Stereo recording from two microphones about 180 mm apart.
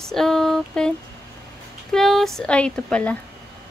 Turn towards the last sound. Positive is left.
turn(degrees=5)  # may be behind; listen again after turning